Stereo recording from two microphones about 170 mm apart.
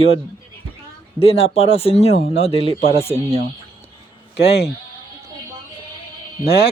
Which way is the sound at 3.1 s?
35° right (ahead or behind).